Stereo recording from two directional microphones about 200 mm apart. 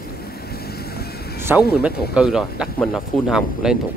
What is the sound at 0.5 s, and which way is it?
Vehicle, 50° left (ahead or behind).